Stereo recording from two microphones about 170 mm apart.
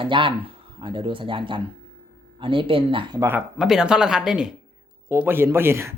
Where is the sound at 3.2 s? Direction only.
5° right (ahead or behind).